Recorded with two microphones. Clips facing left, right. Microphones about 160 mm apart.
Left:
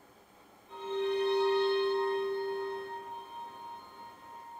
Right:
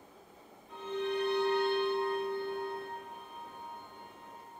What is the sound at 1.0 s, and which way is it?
Music, 30° left (ahead or behind).